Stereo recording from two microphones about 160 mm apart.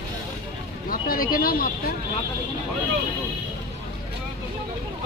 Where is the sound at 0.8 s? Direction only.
65° left (ahead or behind).